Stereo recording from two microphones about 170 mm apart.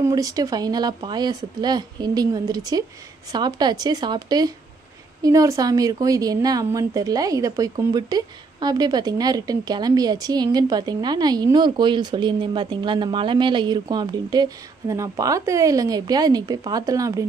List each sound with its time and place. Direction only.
0.0 s a woman's voice: 20° right (ahead or behind)